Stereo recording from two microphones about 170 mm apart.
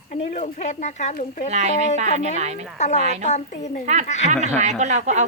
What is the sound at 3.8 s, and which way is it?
Speech, 45° right (ahead or behind).